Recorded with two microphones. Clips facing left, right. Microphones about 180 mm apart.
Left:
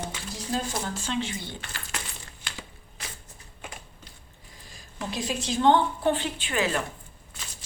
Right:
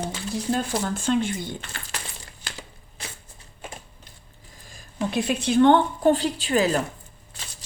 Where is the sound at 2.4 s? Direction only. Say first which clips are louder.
Right 3 dB; 35° right (ahead or behind).